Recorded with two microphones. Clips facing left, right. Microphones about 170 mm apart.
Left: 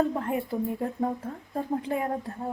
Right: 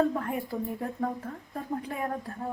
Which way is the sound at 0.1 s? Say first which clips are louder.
Left 3 dB; 25° left (ahead or behind).